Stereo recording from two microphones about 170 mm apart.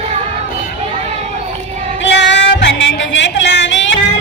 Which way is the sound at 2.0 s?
90° left.